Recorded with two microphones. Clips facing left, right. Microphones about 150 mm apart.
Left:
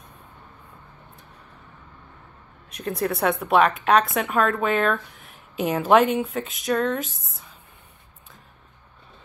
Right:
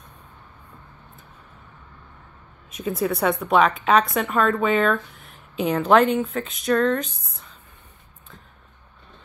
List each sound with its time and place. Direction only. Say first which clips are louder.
2.7 s a woman's voice: right 2 dB; centre (ahead or behind)